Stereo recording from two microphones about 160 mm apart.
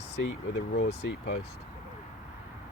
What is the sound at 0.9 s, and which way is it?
Speech, 90° left.